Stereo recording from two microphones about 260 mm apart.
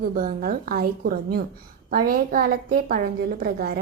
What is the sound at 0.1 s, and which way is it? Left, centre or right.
A woman's voice, right.